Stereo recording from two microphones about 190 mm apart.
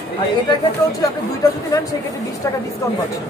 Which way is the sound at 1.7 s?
20° left (ahead or behind).